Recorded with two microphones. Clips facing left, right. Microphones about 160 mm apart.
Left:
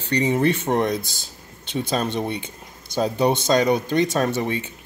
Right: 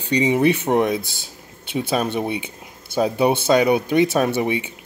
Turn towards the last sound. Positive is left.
turn(degrees=-15)  # may be behind; listen again after turning